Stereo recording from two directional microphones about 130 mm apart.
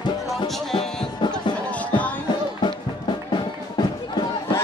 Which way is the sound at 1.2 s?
35° left (ahead or behind).